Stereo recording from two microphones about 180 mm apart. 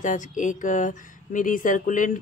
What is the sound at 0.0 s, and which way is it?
Speech, 45° left (ahead or behind).